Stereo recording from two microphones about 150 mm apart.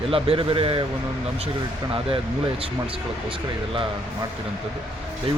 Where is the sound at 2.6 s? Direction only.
35° right (ahead or behind).